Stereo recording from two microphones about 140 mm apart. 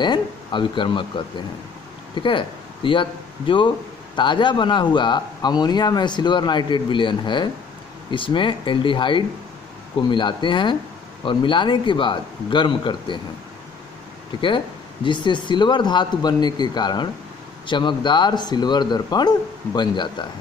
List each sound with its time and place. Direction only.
0.0 s speech: 35° left (ahead or behind)
14.3 s speech: 35° left (ahead or behind)